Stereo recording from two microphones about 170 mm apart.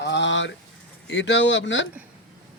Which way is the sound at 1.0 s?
90° left.